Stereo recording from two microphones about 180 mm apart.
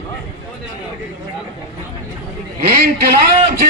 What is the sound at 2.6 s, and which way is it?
Speech, 55° right (ahead or behind).